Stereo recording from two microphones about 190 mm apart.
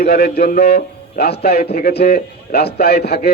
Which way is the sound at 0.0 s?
55° left (ahead or behind).